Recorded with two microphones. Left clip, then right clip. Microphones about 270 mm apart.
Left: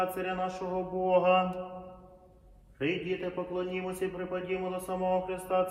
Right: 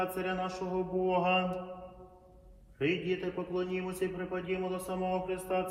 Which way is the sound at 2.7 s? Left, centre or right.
Centre.